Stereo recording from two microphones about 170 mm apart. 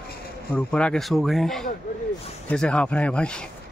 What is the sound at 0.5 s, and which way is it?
Speech, 5° left (ahead or behind).